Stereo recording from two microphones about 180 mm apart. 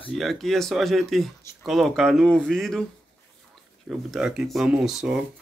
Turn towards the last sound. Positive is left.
turn(degrees=-5)  # may be behind; listen again after turning